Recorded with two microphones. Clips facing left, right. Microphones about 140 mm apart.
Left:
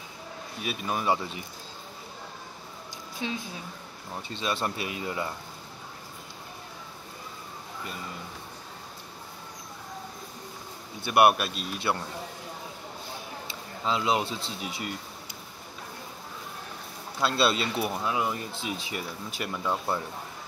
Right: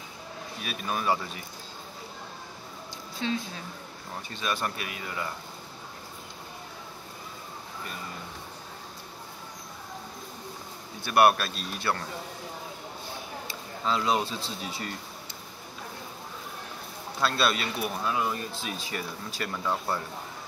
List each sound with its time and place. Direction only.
0.6 s speech: 20° left (ahead or behind)
3.2 s speech: 15° left (ahead or behind)
11.1 s speech: 20° left (ahead or behind)
13.8 s speech: 15° left (ahead or behind)
17.2 s speech: 20° left (ahead or behind)